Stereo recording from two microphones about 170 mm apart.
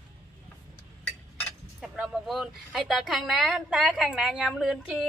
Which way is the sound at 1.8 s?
Centre (ahead or behind).